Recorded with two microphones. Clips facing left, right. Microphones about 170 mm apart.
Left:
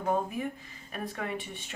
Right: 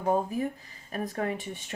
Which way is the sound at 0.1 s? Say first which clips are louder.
Right 3 dB; 35° right (ahead or behind).